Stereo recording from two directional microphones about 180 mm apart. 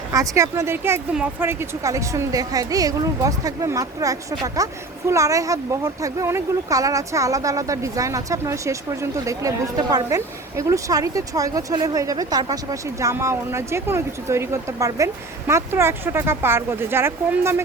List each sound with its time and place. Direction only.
0.1 s speech: 15° right (ahead or behind)